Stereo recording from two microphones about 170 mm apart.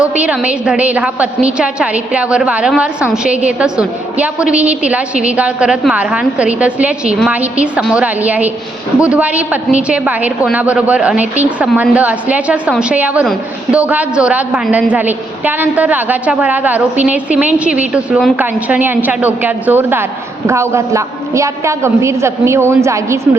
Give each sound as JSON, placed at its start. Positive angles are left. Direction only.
{"t": 0.0, "sound": "a woman's voice", "side_deg": -10}